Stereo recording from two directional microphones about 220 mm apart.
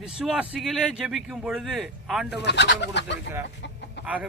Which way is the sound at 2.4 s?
50° left (ahead or behind).